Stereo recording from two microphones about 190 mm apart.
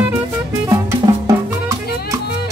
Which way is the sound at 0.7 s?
20° right (ahead or behind).